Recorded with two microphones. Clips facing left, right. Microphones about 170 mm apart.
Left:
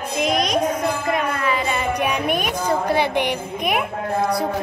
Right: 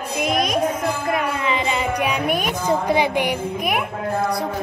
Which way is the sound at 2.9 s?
10° right (ahead or behind).